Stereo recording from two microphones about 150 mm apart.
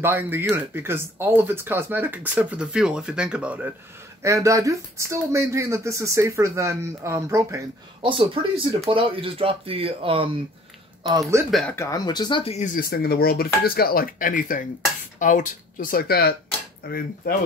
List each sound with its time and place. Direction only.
0.0 s speech: 15° right (ahead or behind)
4.2 s speech: 20° right (ahead or behind)
8.0 s speech: 35° right (ahead or behind)
11.1 s speech: 20° right (ahead or behind)
11.7 s speech: 20° left (ahead or behind)
12.5 s speech: 65° left (ahead or behind); by 17.3 s 85° left